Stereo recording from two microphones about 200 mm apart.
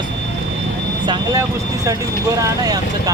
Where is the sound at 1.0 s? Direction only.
20° right (ahead or behind).